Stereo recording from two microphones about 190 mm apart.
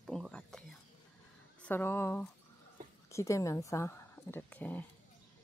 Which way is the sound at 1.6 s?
10° left (ahead or behind).